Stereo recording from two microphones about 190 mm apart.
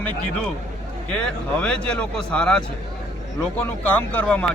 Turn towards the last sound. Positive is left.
turn(degrees=5)  # may be behind; listen again after turning